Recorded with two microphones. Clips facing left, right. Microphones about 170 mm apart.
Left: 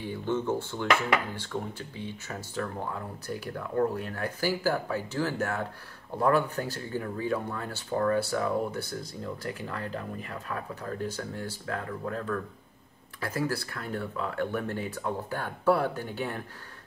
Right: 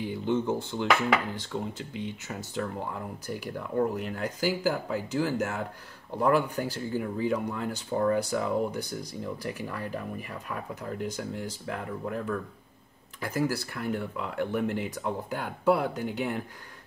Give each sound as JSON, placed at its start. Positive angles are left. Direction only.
{"t": 0.0, "sound": "speech", "side_deg": -15}